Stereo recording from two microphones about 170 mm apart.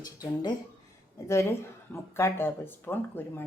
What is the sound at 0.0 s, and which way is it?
Speech, 20° left (ahead or behind).